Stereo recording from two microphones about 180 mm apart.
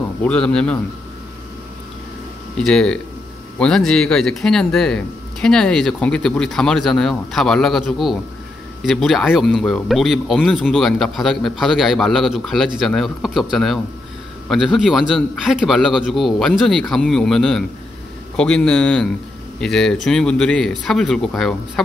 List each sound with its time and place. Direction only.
0.2 s speech: 5° left (ahead or behind)
2.5 s speech: 5° left (ahead or behind)